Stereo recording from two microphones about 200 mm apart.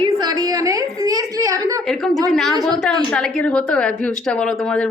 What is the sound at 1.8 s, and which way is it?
A woman's voice, centre (ahead or behind).